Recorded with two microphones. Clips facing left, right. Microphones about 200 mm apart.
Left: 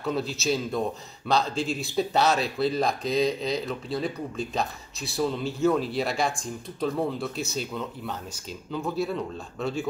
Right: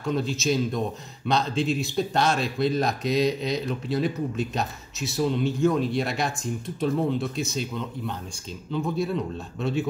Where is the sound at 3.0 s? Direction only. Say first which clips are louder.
Right 1 dB; 30° left (ahead or behind).